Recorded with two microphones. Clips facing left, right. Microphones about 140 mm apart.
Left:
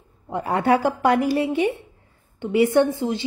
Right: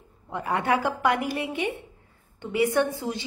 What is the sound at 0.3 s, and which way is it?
A woman's voice, 35° left (ahead or behind).